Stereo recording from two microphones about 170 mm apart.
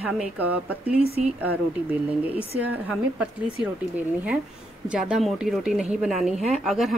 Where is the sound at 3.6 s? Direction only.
10° right (ahead or behind).